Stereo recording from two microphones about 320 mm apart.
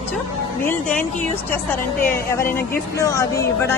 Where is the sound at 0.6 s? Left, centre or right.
Centre.